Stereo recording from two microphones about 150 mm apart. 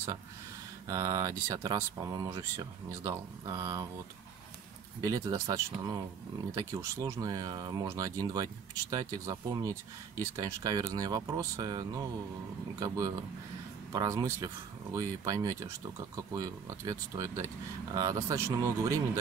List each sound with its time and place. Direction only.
0.8 s speech: 20° right (ahead or behind)
5.0 s speech: 20° right (ahead or behind)